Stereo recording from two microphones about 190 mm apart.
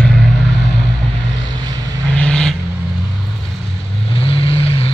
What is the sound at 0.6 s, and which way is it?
Vehicle, 65° left (ahead or behind).